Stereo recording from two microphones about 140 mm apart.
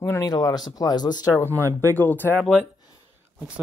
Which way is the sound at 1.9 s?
15° left (ahead or behind).